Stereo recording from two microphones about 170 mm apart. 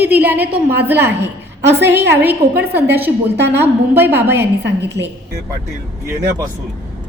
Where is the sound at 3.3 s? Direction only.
90° right.